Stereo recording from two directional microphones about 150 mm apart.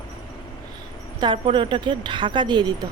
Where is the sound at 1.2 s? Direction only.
35° right (ahead or behind).